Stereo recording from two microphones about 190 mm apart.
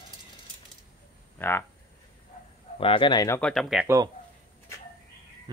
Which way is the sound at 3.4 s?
Centre (ahead or behind).